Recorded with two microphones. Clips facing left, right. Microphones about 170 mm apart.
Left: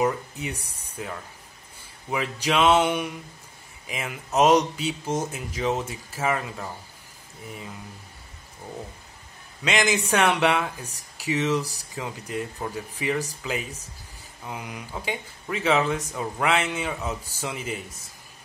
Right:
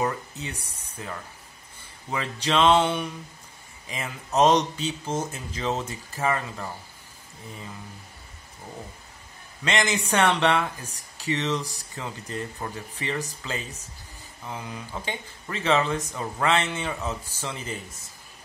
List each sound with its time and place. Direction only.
0.0 s speech: 10° left (ahead or behind)
9.7 s speech: 5° left (ahead or behind)